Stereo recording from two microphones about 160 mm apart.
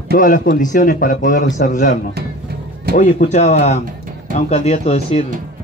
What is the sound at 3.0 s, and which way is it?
Speech, 50° left (ahead or behind).